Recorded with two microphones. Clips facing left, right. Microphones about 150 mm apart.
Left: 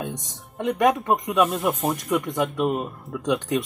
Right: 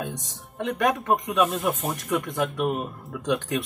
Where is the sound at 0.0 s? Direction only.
20° left (ahead or behind).